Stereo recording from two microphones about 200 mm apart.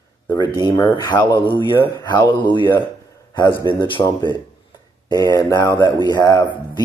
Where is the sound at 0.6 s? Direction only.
10° left (ahead or behind).